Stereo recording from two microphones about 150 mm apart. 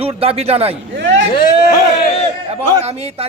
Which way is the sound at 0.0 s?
40° right (ahead or behind).